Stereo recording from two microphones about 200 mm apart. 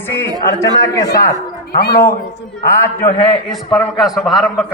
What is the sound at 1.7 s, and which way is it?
Speech, 50° left (ahead or behind).